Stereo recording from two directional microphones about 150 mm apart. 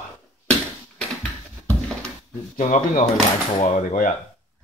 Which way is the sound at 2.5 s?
55° left (ahead or behind).